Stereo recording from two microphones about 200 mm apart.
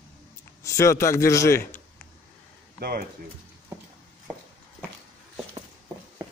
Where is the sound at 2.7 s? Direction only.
55° right (ahead or behind).